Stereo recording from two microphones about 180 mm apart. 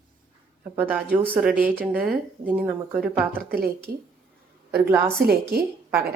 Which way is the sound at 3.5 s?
55° right (ahead or behind).